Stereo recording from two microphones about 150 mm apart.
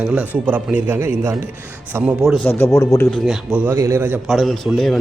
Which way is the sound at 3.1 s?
Centre (ahead or behind).